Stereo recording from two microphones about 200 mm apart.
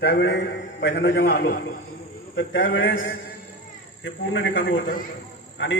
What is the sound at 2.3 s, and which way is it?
Speech, 60° left (ahead or behind).